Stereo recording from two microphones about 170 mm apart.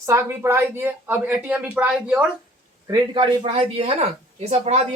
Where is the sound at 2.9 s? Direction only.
25° right (ahead or behind).